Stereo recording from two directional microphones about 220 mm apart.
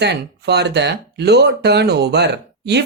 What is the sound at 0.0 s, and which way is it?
Speech, 50° right (ahead or behind).